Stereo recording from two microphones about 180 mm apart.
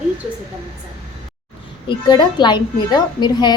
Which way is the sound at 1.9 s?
25° left (ahead or behind).